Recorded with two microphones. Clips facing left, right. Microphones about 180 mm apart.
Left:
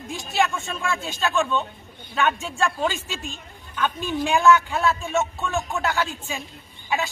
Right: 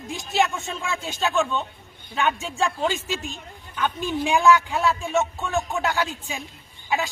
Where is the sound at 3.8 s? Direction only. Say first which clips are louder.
Even; 15° right (ahead or behind).